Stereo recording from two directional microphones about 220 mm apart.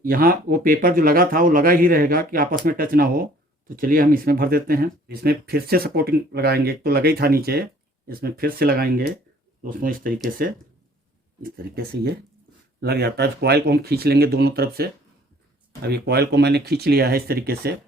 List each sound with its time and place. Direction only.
0.0 s speech: 40° right (ahead or behind)